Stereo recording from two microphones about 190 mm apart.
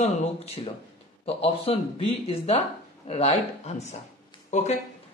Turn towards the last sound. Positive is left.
turn(degrees=35)  # may be behind; listen again after turning